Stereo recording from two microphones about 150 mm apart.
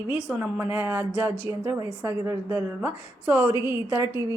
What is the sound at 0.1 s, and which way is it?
Speech, 5° right (ahead or behind).